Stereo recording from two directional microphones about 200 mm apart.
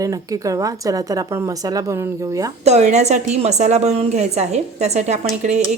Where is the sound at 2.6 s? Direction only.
35° right (ahead or behind).